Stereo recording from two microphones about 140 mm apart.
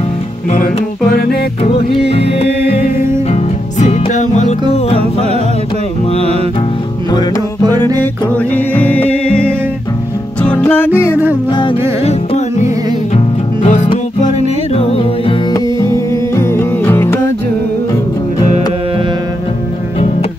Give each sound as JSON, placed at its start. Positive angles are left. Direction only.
{"t": 2.0, "sound": "music", "side_deg": 45}
{"t": 3.8, "sound": "music", "side_deg": 60}
{"t": 8.0, "sound": "music", "side_deg": 10}
{"t": 10.6, "sound": "music", "side_deg": 15}
{"t": 12.0, "sound": "music", "side_deg": 55}
{"t": 15.5, "sound": "music", "side_deg": 20}